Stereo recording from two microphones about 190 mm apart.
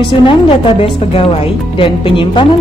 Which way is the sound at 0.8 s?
30° left (ahead or behind).